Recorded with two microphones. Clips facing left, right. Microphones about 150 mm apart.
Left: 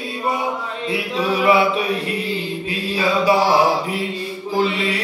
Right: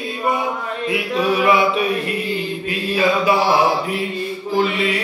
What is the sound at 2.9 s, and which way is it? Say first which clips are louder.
Mantra: even; 30° left (ahead or behind).